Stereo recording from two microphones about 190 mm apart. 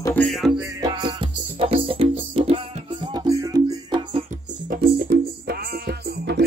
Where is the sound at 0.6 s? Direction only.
20° right (ahead or behind).